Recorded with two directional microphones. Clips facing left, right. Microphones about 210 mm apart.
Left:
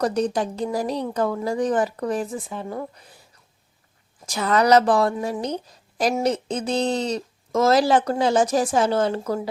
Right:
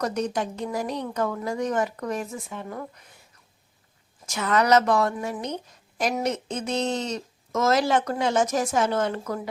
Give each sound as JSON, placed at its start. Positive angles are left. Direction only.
{"t": 0.0, "sound": "a woman's voice", "side_deg": 35}
{"t": 4.3, "sound": "a woman's voice", "side_deg": 35}